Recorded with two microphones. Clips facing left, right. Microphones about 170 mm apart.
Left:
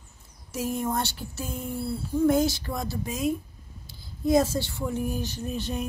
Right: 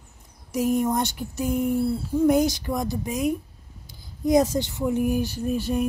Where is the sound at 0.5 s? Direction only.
15° right (ahead or behind).